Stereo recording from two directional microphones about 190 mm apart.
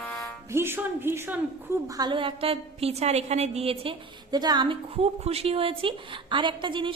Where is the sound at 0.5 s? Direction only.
10° right (ahead or behind).